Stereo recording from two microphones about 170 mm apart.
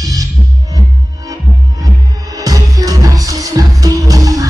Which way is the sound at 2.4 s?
20° right (ahead or behind).